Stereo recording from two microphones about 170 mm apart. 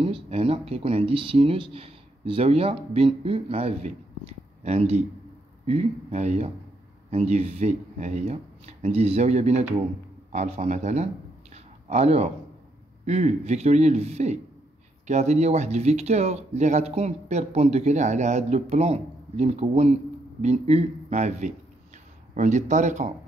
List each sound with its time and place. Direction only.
0.0 s speech: 35° right (ahead or behind)
11.5 s a sound: 40° right (ahead or behind)
13.0 s speech: 40° right (ahead or behind)